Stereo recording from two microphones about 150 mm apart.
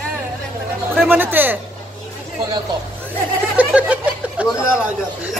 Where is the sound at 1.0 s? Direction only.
15° right (ahead or behind).